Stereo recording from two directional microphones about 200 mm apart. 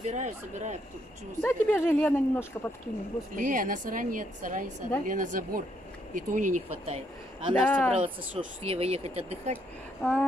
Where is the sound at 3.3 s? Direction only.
40° right (ahead or behind).